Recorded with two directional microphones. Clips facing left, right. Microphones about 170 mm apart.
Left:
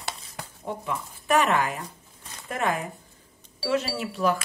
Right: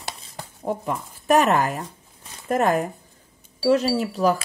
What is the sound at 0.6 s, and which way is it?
Speech, 40° right (ahead or behind).